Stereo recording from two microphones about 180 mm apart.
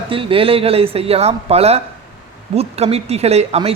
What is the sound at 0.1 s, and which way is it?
A man's voice, 30° right (ahead or behind).